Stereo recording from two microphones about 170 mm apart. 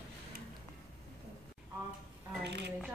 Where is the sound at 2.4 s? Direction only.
85° right.